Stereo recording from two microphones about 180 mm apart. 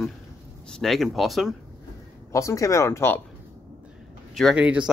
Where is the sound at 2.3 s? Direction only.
15° left (ahead or behind).